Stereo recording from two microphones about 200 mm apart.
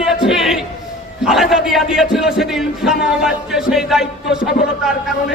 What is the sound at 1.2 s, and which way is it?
A man's voice, centre (ahead or behind).